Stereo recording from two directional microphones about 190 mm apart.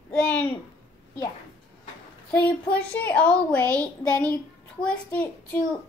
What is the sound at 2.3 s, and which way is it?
A woman's voice, 5° left (ahead or behind).